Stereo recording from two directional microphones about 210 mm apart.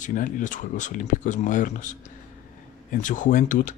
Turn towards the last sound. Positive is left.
turn(degrees=40)  # may be behind; listen again after turning